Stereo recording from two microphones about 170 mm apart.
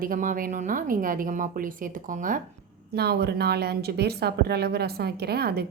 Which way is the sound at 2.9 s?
70° right (ahead or behind).